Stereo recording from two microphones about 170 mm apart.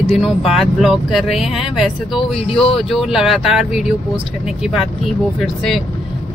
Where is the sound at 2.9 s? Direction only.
Centre (ahead or behind).